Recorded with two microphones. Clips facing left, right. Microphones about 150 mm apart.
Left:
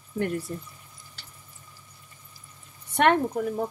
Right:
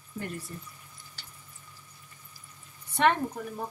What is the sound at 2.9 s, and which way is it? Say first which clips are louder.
Speech: left 4 dB; 75° left (ahead or behind).